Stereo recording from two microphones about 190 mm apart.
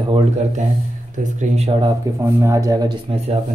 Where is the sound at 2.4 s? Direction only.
15° right (ahead or behind).